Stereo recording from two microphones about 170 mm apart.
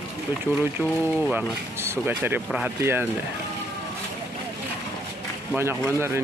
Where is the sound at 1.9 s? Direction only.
10° right (ahead or behind).